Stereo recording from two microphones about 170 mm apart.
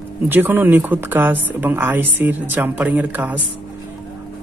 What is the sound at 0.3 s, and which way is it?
A woman's voice, 10° right (ahead or behind).